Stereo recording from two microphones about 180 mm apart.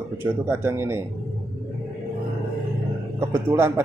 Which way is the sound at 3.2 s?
15° right (ahead or behind).